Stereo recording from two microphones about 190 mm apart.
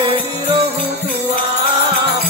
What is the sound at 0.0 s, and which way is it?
Music, 25° right (ahead or behind).